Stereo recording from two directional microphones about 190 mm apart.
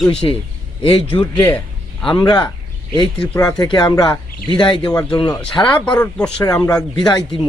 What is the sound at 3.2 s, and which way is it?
Speech, 5° left (ahead or behind).